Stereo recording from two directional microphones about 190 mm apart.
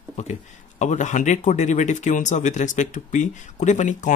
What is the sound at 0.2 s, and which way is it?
Speech, 40° left (ahead or behind).